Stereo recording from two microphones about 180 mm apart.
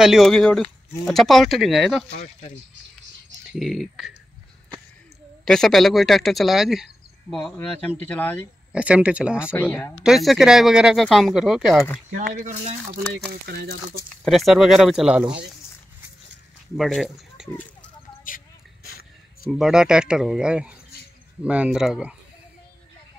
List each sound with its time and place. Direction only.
0.0 s speech: centre (ahead or behind)
3.5 s speech: centre (ahead or behind)
5.4 s speech: 5° left (ahead or behind)
8.7 s speech: 5° right (ahead or behind)
9.5 s speech: 10° left (ahead or behind)
10.0 s speech: centre (ahead or behind)
12.1 s speech: 45° right (ahead or behind)
13.5 s speech: 55° right (ahead or behind)
14.2 s speech: centre (ahead or behind)
16.7 s speech: centre (ahead or behind)
18.3 s vehicle: 50° left (ahead or behind)
19.4 s speech: centre (ahead or behind)